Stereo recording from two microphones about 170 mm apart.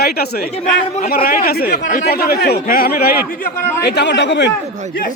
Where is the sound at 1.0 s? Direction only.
60° left (ahead or behind).